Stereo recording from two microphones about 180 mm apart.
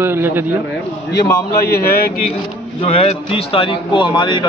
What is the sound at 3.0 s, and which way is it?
A man's voice, 35° left (ahead or behind).